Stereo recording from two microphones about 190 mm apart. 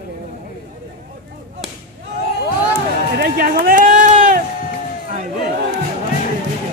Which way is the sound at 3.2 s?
55° right (ahead or behind).